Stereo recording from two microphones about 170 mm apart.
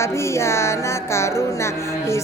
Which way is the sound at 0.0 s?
15° left (ahead or behind).